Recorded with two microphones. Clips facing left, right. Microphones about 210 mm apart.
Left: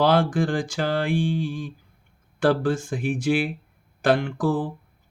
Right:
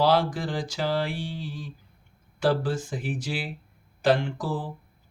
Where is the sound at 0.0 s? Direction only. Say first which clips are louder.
Left 3 dB; 50° left (ahead or behind).